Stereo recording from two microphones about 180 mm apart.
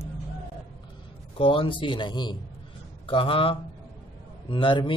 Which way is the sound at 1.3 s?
30° left (ahead or behind).